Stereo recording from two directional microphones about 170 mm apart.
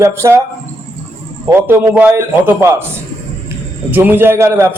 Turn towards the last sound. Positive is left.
turn(degrees=-15)  # may be behind; listen again after turning